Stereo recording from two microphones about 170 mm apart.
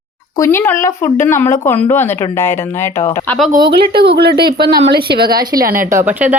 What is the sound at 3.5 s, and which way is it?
Speech, 25° right (ahead or behind).